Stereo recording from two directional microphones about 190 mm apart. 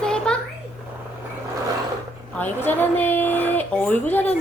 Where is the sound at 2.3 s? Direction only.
10° left (ahead or behind).